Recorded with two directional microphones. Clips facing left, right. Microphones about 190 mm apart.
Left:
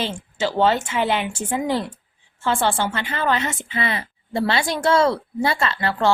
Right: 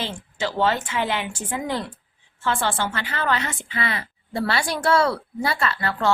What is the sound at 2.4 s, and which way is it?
A woman's voice, 20° left (ahead or behind).